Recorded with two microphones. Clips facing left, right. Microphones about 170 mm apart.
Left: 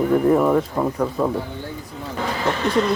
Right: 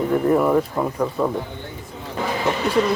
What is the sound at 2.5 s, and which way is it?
Speech, 10° right (ahead or behind).